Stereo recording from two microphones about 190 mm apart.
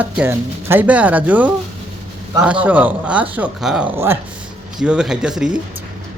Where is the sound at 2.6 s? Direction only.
10° right (ahead or behind).